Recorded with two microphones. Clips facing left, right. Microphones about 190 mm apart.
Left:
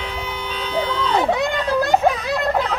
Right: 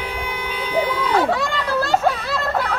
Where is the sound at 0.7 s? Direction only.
10° right (ahead or behind).